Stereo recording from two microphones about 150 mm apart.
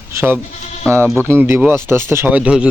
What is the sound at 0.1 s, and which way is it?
Speech, 15° right (ahead or behind).